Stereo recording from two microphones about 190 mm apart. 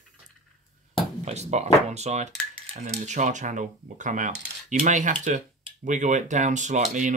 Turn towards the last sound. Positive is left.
turn(degrees=-40)  # may be behind; listen again after turning